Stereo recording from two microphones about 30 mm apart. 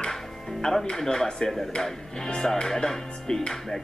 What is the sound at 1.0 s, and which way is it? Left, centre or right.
Music, centre.